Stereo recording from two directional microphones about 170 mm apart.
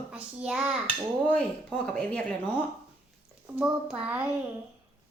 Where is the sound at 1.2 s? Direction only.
5° left (ahead or behind).